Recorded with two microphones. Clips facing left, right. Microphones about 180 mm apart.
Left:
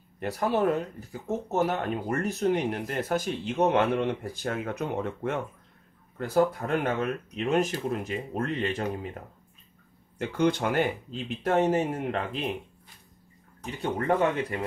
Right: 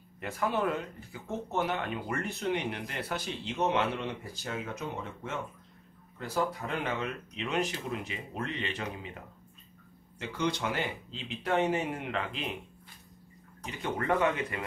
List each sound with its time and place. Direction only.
0.2 s speech: 40° left (ahead or behind)
10.1 s speech: 55° left (ahead or behind)
13.8 s speech: 35° left (ahead or behind)